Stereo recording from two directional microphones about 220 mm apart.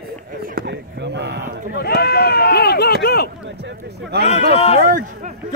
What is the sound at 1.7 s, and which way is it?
Speech, 45° left (ahead or behind).